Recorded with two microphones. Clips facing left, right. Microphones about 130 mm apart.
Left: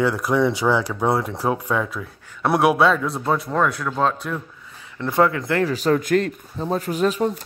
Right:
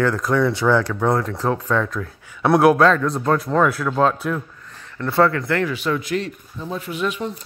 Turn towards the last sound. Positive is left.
turn(degrees=40)  # may be behind; listen again after turning